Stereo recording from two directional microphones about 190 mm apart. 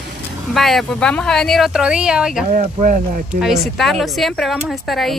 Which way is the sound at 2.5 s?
40° right (ahead or behind).